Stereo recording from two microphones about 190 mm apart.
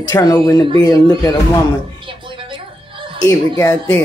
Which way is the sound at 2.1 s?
25° right (ahead or behind).